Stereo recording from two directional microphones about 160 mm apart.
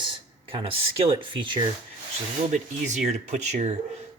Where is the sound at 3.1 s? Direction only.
45° right (ahead or behind).